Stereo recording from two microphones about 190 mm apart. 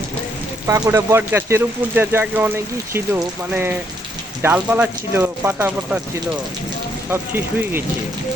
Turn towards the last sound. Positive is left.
turn(degrees=-10)  # may be behind; listen again after turning